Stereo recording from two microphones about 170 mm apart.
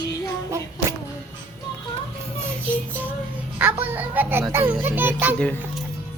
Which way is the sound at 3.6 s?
10° right (ahead or behind).